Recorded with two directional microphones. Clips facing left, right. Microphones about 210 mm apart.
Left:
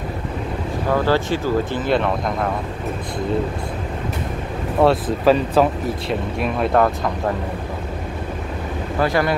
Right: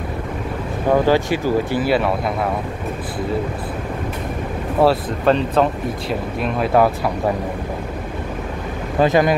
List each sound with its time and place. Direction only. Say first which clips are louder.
0.9 s speech: right 3 dB; 15° right (ahead or behind)
4.8 s speech: left 1 dB; 5° left (ahead or behind)
9.0 s speech: right 4 dB; 20° right (ahead or behind)